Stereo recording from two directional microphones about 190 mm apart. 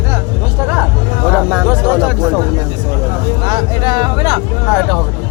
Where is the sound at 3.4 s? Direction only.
25° right (ahead or behind).